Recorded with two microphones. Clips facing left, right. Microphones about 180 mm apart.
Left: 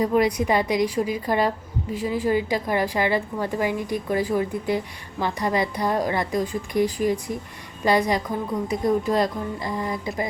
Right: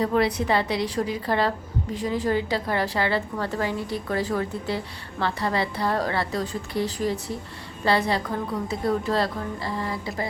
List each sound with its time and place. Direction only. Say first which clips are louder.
0.0 s a woman's voice: left 2 dB; 10° left (ahead or behind)